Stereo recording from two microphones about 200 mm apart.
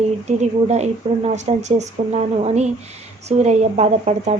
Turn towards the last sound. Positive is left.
turn(degrees=-35)  # may be behind; listen again after turning